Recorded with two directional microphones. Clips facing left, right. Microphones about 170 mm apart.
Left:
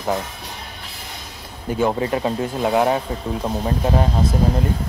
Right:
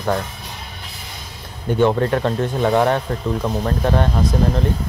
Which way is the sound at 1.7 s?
5° left (ahead or behind).